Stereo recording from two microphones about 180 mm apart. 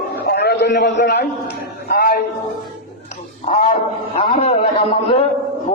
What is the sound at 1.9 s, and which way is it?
Music, 55° left (ahead or behind).